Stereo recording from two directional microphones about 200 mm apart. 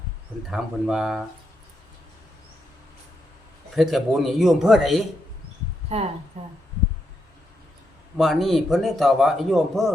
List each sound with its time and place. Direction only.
0.5 s speech: centre (ahead or behind)
3.8 s speech: centre (ahead or behind)
6.3 s speech: 35° right (ahead or behind)
8.2 s speech: centre (ahead or behind)